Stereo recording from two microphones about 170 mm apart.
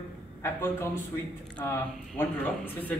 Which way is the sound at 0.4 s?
15° left (ahead or behind).